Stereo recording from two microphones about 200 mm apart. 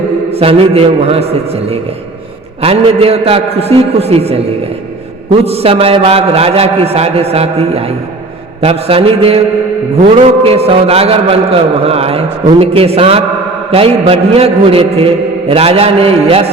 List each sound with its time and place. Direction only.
0.3 s a man's voice: 30° right (ahead or behind)